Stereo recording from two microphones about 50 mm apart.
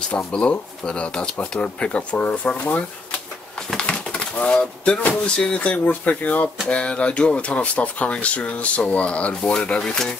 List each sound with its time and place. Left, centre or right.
0.1 s speech: left
3.7 s bird: left
5.0 s speech: left
6.7 s speech: left
9.3 s speech: centre